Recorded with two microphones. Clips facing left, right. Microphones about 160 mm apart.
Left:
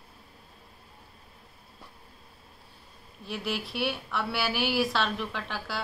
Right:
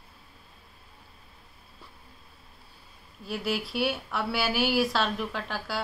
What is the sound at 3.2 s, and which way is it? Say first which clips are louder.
A woman's voice: right 3 dB; centre (ahead or behind).